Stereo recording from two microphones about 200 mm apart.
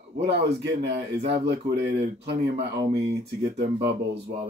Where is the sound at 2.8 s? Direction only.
35° right (ahead or behind).